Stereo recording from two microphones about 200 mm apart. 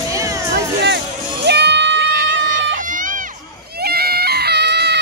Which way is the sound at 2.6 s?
70° right (ahead or behind).